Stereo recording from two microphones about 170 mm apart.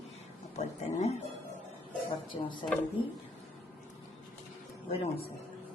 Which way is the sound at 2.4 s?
30° left (ahead or behind).